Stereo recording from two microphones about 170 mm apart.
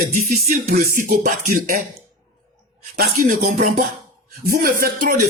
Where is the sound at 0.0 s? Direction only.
55° right (ahead or behind).